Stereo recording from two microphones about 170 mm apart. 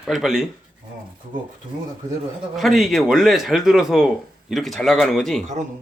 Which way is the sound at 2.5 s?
Centre (ahead or behind).